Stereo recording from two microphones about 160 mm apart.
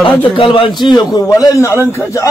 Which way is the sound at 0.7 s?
25° left (ahead or behind).